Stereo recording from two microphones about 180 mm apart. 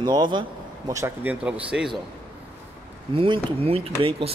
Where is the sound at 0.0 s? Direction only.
25° right (ahead or behind); by 1.9 s 5° right (ahead or behind).